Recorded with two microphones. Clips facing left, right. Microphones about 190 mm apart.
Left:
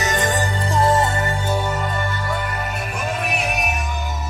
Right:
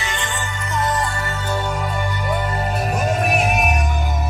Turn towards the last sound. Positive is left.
turn(degrees=-50)  # may be behind; listen again after turning